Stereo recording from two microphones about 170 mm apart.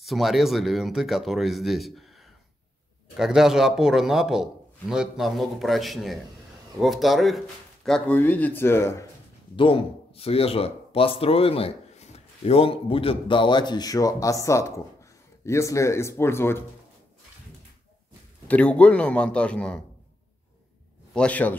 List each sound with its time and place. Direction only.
0.0 s a man's voice: centre (ahead or behind); by 9.0 s 15° left (ahead or behind)
9.6 s a man's voice: 30° left (ahead or behind); by 16.6 s 15° left (ahead or behind)
18.5 s a man's voice: 10° left (ahead or behind)
21.1 s a man's voice: 5° left (ahead or behind)